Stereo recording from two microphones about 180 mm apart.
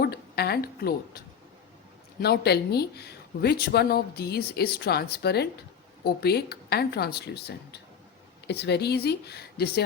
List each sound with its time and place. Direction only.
0.0 s a woman's voice: 60° left (ahead or behind)
2.2 s speech: 65° left (ahead or behind)